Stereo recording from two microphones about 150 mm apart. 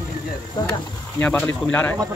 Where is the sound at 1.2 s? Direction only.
15° left (ahead or behind).